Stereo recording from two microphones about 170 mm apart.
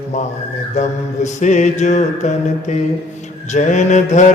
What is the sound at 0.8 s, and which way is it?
Mantra, 45° left (ahead or behind).